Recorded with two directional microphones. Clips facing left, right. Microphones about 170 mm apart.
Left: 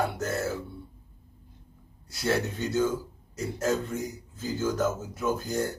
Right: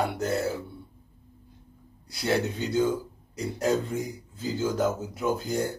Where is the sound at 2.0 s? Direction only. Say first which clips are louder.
Right 1 dB; 15° right (ahead or behind).